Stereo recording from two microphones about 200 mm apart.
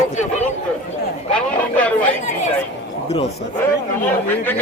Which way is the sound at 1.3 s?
5° left (ahead or behind).